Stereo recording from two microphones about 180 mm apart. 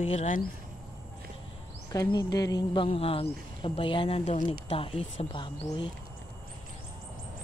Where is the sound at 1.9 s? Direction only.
20° left (ahead or behind).